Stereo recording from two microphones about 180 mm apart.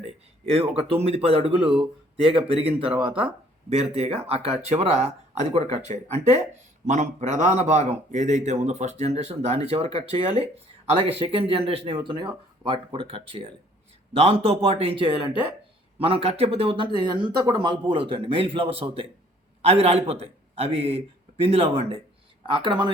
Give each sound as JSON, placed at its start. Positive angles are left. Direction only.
{"t": 0.0, "sound": "a man's voice", "side_deg": -35}
{"t": 3.1, "sound": "speech", "side_deg": -5}
{"t": 3.7, "sound": "a man's voice", "side_deg": -35}